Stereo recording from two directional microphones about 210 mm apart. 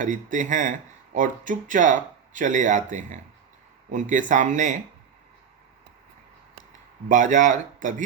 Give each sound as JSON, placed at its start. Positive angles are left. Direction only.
{"t": 0.0, "sound": "speech", "side_deg": -40}
{"t": 7.1, "sound": "speech", "side_deg": -35}